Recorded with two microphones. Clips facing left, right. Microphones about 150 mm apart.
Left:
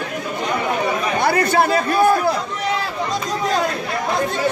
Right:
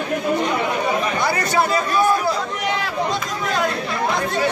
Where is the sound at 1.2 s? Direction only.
55° left (ahead or behind).